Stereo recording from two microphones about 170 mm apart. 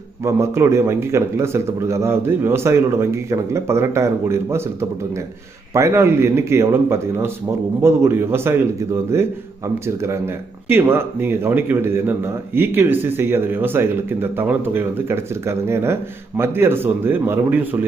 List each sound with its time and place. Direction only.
0.3 s a man's voice: 15° right (ahead or behind)